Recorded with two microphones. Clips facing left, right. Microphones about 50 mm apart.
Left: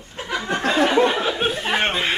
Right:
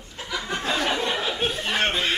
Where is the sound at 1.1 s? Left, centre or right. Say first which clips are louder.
Left 4 dB; left.